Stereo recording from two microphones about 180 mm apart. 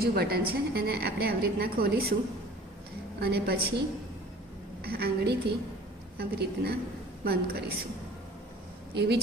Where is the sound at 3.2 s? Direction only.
60° right (ahead or behind).